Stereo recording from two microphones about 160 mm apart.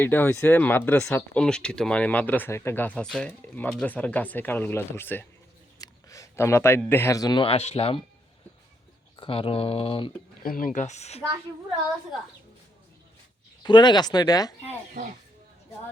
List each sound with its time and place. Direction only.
0.0 s speech: 10° left (ahead or behind); by 8.0 s 35° left (ahead or behind)
9.1 s speech: 35° left (ahead or behind)
10.4 s speech: 60° left (ahead or behind); by 11.2 s 45° left (ahead or behind)
13.6 s speech: 30° left (ahead or behind)